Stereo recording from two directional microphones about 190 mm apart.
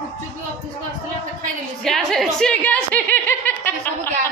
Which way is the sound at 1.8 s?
Centre (ahead or behind).